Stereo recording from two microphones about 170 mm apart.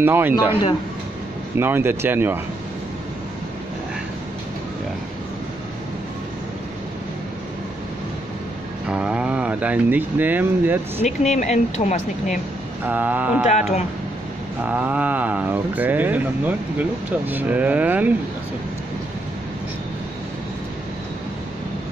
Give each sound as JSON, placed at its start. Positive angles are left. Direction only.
{"t": 0.0, "sound": "speech", "side_deg": -10}
{"t": 1.6, "sound": "speech", "side_deg": -15}
{"t": 8.8, "sound": "speech", "side_deg": -5}
{"t": 11.2, "sound": "speech", "side_deg": 45}
{"t": 12.8, "sound": "speech", "side_deg": -10}
{"t": 13.5, "sound": "speech", "side_deg": 40}
{"t": 14.6, "sound": "speech", "side_deg": -10}